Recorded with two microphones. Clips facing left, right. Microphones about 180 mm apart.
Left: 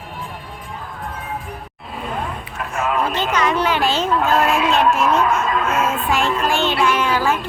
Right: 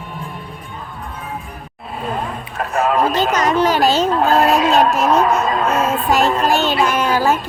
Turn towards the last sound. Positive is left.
turn(degrees=-40)  # may be behind; listen again after turning